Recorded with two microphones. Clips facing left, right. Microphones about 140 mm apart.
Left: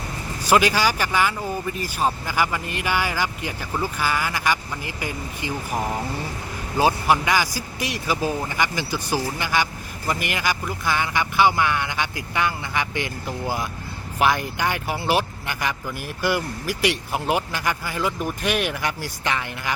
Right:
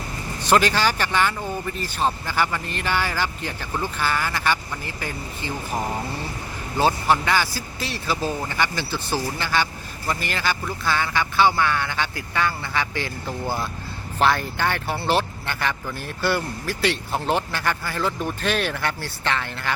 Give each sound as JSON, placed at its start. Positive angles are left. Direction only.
{"t": 0.4, "sound": "speech", "side_deg": 10}